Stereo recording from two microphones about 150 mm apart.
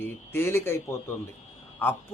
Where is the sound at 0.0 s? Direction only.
15° left (ahead or behind).